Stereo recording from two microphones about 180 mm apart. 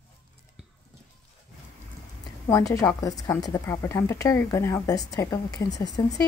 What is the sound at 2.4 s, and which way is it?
A woman's voice, 15° left (ahead or behind).